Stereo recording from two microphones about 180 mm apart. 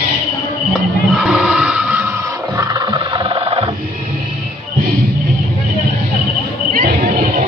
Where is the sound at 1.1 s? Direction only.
5° right (ahead or behind).